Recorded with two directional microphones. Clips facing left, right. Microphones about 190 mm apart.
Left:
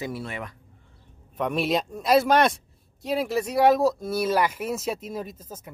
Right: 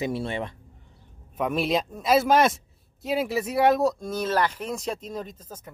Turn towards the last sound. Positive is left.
turn(degrees=10)  # may be behind; listen again after turning